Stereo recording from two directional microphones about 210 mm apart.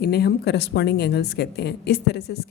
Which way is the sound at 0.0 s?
50° left (ahead or behind).